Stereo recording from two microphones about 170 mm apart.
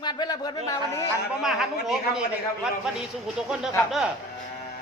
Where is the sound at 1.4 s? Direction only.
Centre (ahead or behind).